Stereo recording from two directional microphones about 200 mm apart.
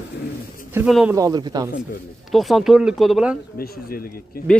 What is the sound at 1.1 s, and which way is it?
Speech, 20° right (ahead or behind).